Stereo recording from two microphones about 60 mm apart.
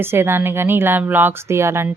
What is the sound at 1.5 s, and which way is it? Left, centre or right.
Speech, right.